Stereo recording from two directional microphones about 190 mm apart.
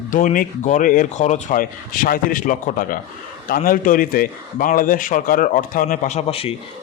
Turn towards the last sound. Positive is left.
turn(degrees=30)  # may be behind; listen again after turning